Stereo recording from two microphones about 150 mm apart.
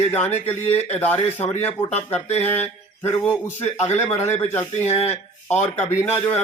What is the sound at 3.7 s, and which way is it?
A man's voice, 45° left (ahead or behind).